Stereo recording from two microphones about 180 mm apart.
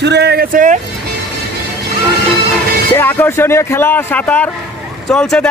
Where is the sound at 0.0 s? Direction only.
65° right (ahead or behind); by 0.7 s 50° right (ahead or behind).